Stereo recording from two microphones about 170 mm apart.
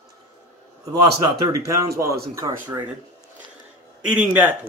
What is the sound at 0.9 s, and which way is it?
A man's voice, 20° right (ahead or behind).